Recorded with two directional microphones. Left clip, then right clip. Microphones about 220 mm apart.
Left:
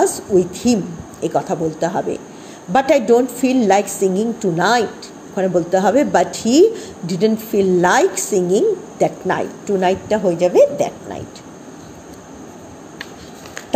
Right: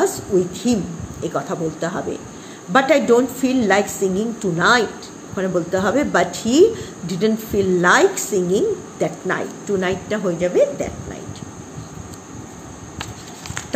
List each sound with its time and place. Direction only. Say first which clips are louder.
0.0 s a woman's voice: left 3 dB; 15° left (ahead or behind)
10.4 s speech: left 5 dB; 35° left (ahead or behind)